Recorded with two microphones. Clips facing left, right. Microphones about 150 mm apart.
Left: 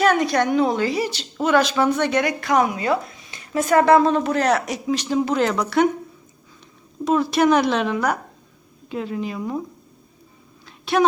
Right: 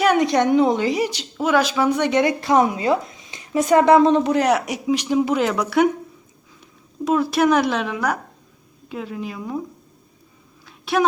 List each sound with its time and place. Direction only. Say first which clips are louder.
0.0 s a woman's voice: right 1 dB; 15° right (ahead or behind)
7.0 s a woman's voice: even; 5° right (ahead or behind)
10.7 s a sound: even; 5° right (ahead or behind)